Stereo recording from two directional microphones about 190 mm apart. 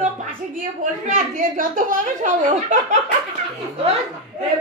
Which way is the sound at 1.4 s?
45° right (ahead or behind).